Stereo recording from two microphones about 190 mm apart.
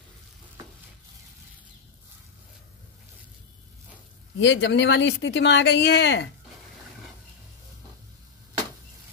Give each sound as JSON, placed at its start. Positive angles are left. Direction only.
{"t": 4.4, "sound": "speech", "side_deg": 70}